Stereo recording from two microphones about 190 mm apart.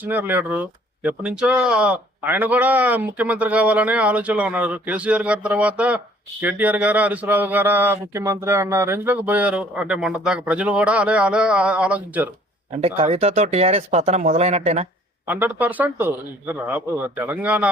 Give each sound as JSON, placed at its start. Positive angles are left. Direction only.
{"t": 0.0, "sound": "speech", "side_deg": -10}
{"t": 12.7, "sound": "speech", "side_deg": -35}
{"t": 15.3, "sound": "speech", "side_deg": -10}